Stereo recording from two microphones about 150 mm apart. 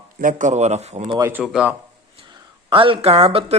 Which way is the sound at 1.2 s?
10° right (ahead or behind).